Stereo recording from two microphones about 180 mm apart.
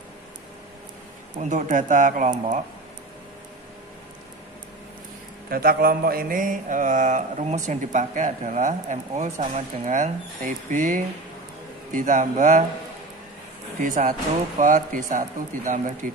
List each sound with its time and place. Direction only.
1.4 s mantra: 45° right (ahead or behind)
5.5 s mantra: 55° right (ahead or behind)
13.7 s mantra: 45° right (ahead or behind)